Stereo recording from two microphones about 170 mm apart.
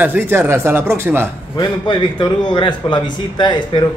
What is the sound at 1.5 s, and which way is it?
A man's voice, 25° left (ahead or behind).